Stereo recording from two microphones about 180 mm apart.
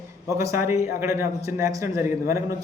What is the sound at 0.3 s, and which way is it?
A man's voice, 15° right (ahead or behind).